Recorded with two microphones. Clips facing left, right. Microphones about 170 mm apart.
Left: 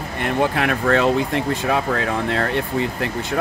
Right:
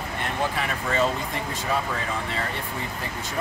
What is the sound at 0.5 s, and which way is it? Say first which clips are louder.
Speech: left 8 dB; 70° left (ahead or behind).